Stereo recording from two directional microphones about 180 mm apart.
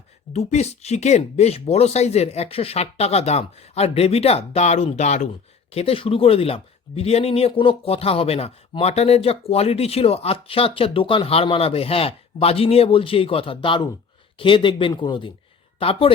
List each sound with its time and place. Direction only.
0.3 s speech: 35° left (ahead or behind)